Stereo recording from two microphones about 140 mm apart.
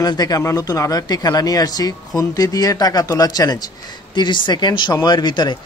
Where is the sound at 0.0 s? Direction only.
30° left (ahead or behind).